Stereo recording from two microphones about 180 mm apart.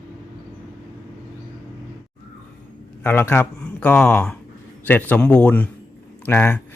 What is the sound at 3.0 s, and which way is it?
Speech, 10° left (ahead or behind).